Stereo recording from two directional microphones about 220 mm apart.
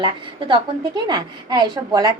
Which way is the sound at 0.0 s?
20° right (ahead or behind).